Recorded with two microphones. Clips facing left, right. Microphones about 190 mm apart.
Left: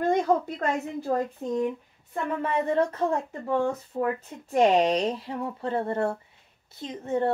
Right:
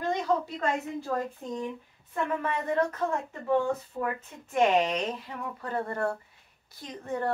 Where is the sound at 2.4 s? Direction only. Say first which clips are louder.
Left 6 dB; 30° left (ahead or behind).